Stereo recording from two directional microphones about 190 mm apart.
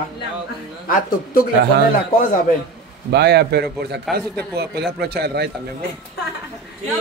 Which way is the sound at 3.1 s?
60° right (ahead or behind).